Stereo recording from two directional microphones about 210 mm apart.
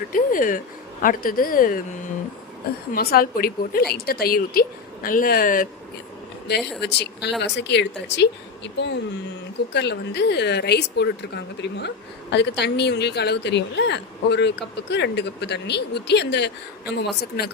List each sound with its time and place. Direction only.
0.1 s a woman's voice: 40° left (ahead or behind)
2.9 s a woman's voice: 45° left (ahead or behind)
6.5 s a woman's voice: 50° left (ahead or behind)
12.3 s a woman's voice: 55° left (ahead or behind)